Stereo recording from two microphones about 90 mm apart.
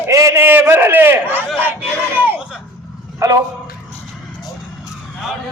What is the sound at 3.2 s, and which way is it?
Speech, 40° right (ahead or behind).